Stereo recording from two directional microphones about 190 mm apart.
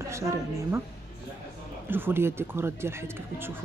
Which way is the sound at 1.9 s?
10° right (ahead or behind).